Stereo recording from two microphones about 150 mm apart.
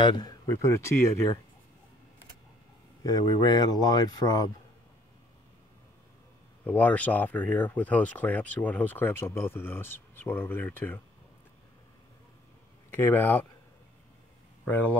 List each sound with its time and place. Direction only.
0.0 s speech: 30° left (ahead or behind)
3.0 s speech: 25° left (ahead or behind)
6.6 s speech: 10° left (ahead or behind)
12.9 s speech: 15° left (ahead or behind)
14.6 s speech: 10° left (ahead or behind)